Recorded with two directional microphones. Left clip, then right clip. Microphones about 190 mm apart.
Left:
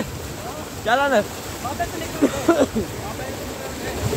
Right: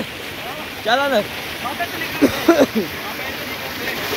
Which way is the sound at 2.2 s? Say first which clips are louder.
Right 4 dB; 25° right (ahead or behind).